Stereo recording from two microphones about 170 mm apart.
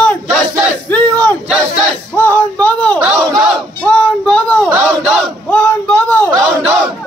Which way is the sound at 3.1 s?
25° right (ahead or behind).